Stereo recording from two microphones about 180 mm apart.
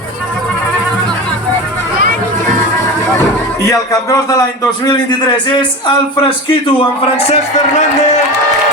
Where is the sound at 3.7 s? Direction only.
20° left (ahead or behind).